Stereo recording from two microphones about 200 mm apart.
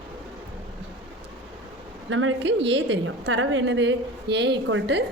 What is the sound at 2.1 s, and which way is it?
A woman's voice, 80° right.